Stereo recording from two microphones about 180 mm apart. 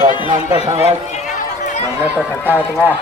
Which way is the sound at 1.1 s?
40° left (ahead or behind).